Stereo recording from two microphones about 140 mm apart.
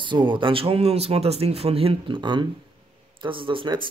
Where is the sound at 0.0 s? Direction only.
35° right (ahead or behind).